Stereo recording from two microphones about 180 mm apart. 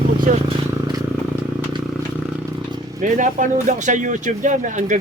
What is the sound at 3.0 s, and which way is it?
Speech, 45° right (ahead or behind).